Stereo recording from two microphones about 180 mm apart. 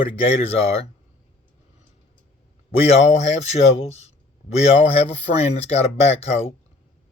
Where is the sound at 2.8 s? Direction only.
35° left (ahead or behind).